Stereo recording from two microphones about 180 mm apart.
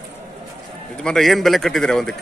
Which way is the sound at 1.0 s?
Centre (ahead or behind).